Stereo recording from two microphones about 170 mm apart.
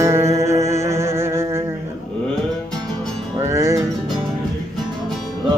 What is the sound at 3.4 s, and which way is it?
Music, 15° right (ahead or behind).